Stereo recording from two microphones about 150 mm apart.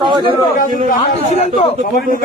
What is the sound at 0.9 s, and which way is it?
Speech, 50° left (ahead or behind).